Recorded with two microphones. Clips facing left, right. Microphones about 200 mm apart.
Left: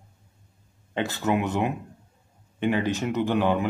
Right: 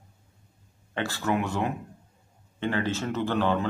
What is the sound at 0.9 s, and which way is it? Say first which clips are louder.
Speech: left 3 dB; 20° left (ahead or behind).